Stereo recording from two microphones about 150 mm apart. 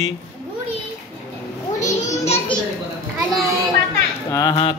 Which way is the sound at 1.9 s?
45° left (ahead or behind).